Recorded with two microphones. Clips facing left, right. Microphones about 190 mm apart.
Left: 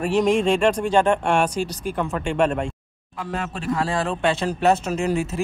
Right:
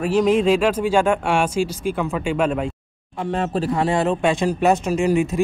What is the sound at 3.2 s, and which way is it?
Speech, 30° right (ahead or behind).